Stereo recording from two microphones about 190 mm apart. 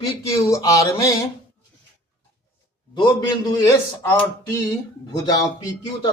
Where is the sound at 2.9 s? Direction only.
25° left (ahead or behind).